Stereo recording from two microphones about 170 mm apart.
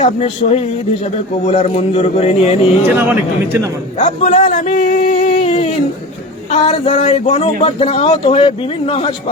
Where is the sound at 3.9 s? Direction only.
40° left (ahead or behind).